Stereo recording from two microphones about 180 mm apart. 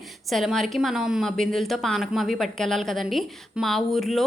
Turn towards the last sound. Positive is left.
turn(degrees=0)  # may be behind; listen again after turning